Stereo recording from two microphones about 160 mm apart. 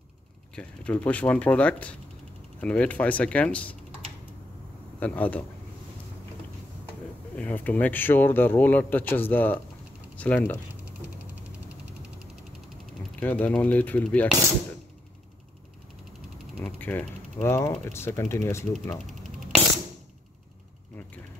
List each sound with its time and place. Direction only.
0.6 s speech: 10° left (ahead or behind)
5.0 s speech: 10° left (ahead or behind)
7.3 s speech: 10° left (ahead or behind)
11.7 s a sound: 5° right (ahead or behind)
13.2 s speech: 10° left (ahead or behind)
16.6 s speech: 5° left (ahead or behind)